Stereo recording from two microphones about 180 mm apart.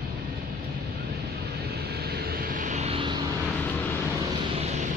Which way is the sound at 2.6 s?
40° right (ahead or behind).